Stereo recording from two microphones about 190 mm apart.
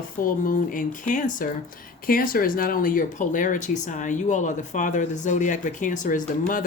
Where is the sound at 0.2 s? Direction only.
45° left (ahead or behind).